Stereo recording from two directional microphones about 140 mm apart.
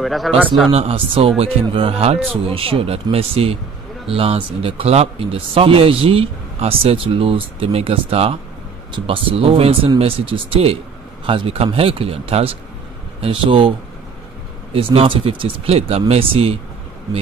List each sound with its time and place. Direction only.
0.0 s speech: centre (ahead or behind)
0.7 s speech: 40° right (ahead or behind)